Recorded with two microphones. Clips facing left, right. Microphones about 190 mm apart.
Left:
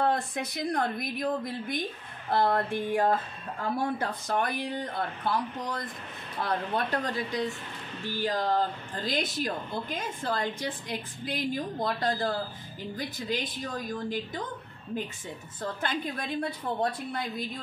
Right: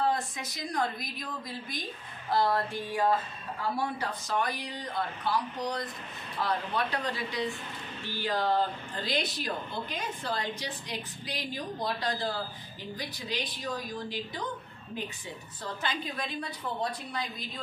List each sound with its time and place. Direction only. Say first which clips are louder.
0.0 s a woman's voice: left 2 dB; 60° left (ahead or behind)
15.6 s a woman's voice: left 3 dB; 55° left (ahead or behind)